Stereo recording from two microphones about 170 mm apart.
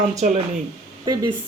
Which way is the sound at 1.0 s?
25° right (ahead or behind).